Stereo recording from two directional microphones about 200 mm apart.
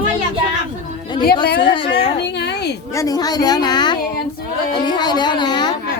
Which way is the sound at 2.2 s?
55° left (ahead or behind).